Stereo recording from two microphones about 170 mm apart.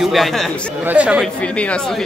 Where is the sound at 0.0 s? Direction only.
Centre (ahead or behind).